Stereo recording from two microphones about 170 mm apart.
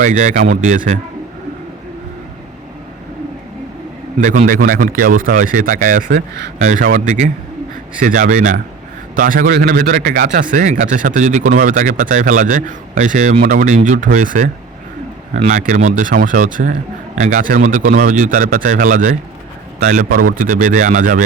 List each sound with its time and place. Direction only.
0.0 s speech: 50° right (ahead or behind)
4.2 s speech: 50° right (ahead or behind)
9.5 s speech: 70° right (ahead or behind); by 21.2 s 50° right (ahead or behind)